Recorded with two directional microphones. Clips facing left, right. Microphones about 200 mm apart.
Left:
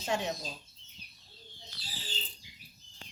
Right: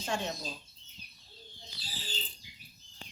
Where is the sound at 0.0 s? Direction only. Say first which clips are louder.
Left 2 dB; 20° left (ahead or behind).